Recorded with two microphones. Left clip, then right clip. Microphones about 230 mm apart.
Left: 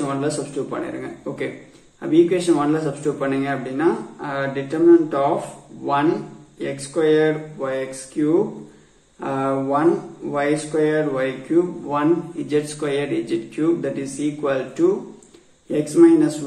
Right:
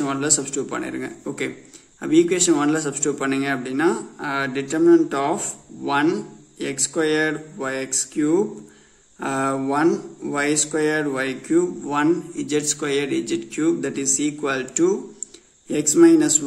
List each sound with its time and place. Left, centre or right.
0.1 s speech: right